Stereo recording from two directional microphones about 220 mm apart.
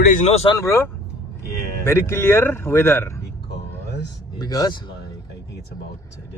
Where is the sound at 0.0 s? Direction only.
35° left (ahead or behind).